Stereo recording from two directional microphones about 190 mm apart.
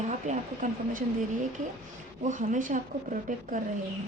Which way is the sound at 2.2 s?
40° right (ahead or behind).